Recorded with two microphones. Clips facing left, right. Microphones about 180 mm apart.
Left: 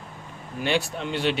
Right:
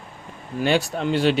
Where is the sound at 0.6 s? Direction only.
40° right (ahead or behind).